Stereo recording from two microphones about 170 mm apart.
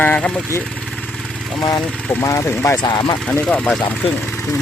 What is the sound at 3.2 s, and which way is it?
Speech, 5° left (ahead or behind).